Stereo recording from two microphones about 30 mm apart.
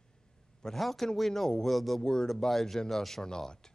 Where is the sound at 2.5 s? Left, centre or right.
Centre.